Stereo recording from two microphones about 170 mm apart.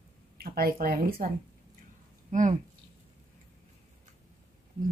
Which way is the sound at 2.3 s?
45° right (ahead or behind).